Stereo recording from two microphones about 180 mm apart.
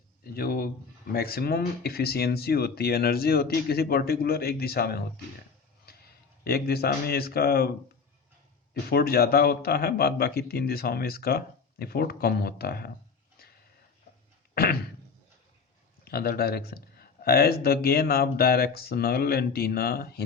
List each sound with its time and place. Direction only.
0.3 s speech: 55° left (ahead or behind)
6.4 s speech: 60° left (ahead or behind)
8.9 s speech: 60° left (ahead or behind)
14.5 s a sound: 60° left (ahead or behind)
16.0 s speech: 60° left (ahead or behind)